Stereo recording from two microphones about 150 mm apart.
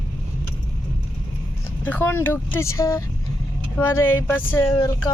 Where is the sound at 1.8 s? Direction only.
10° left (ahead or behind).